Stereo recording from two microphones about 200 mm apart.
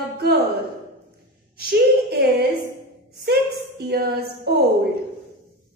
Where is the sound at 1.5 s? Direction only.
50° right (ahead or behind).